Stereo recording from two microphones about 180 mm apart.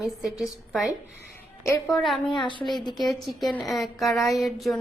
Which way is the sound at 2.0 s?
Centre (ahead or behind).